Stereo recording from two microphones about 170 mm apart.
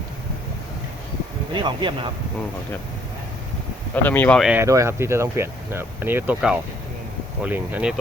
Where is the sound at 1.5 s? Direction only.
30° right (ahead or behind).